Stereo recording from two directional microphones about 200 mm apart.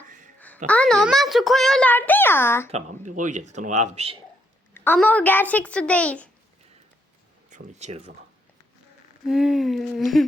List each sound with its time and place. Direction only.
0.3 s a sound: 10° left (ahead or behind)
0.7 s a child's voice: 5° left (ahead or behind)
2.7 s speech: 40° right (ahead or behind)
4.7 s a child's voice: 10° left (ahead or behind)
7.5 s speech: 35° right (ahead or behind)
9.2 s a child's voice: centre (ahead or behind)